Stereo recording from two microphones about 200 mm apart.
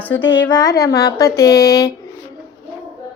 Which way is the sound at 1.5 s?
15° left (ahead or behind).